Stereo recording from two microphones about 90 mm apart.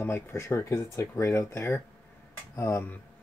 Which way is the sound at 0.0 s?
25° left (ahead or behind).